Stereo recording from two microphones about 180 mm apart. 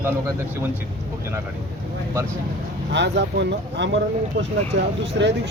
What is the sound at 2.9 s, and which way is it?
Speech, 70° right (ahead or behind).